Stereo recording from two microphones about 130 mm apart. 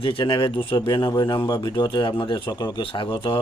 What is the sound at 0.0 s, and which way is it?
Speech, 40° left (ahead or behind).